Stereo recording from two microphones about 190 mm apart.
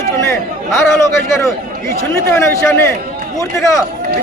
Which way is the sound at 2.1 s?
10° left (ahead or behind).